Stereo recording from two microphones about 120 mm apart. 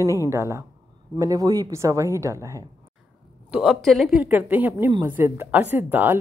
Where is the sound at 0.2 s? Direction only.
25° right (ahead or behind).